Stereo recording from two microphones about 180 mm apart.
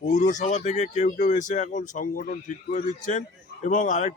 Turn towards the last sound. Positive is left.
turn(degrees=45)  # may be behind; listen again after turning